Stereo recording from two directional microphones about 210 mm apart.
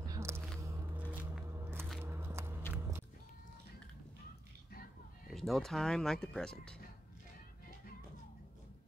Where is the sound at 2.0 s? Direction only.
10° right (ahead or behind).